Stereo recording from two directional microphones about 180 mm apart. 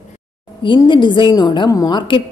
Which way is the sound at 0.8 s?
25° left (ahead or behind).